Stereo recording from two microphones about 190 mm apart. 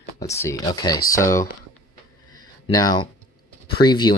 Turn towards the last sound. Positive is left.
turn(degrees=25)  # may be behind; listen again after turning